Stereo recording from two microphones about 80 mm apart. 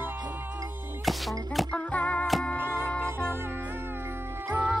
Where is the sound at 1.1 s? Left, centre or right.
Centre.